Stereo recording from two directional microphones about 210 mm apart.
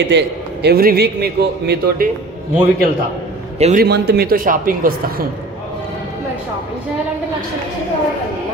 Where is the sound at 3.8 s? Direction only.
50° right (ahead or behind).